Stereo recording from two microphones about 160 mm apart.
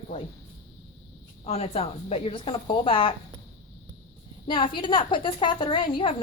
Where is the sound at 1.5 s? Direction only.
40° left (ahead or behind).